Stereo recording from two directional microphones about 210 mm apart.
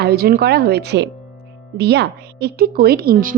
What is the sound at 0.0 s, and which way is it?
A woman's voice, 45° right (ahead or behind).